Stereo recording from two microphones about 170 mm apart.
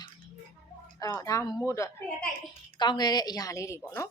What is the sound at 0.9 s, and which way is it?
A woman's voice, 20° left (ahead or behind).